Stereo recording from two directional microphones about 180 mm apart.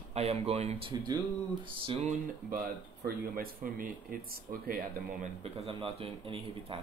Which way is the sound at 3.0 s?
55° right (ahead or behind).